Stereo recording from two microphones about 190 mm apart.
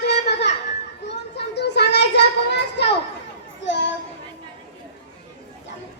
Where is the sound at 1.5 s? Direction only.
60° left (ahead or behind).